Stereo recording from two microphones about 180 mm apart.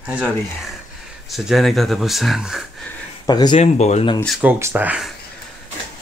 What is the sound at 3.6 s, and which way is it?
Speech, 40° left (ahead or behind).